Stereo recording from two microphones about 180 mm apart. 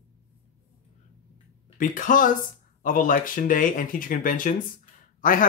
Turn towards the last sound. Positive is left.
turn(degrees=50)  # may be behind; listen again after turning